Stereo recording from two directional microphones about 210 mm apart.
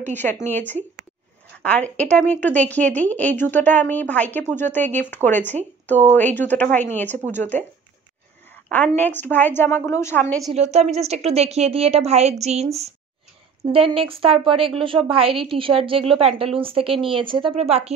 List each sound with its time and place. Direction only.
0.1 s speech: 10° left (ahead or behind)
8.6 s speech: 5° left (ahead or behind)
10.5 s a woman's voice: 30° right (ahead or behind)
13.7 s a woman's voice: 25° right (ahead or behind)